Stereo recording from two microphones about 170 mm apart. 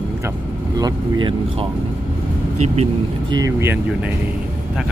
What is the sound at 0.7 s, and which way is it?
Speech, 20° right (ahead or behind).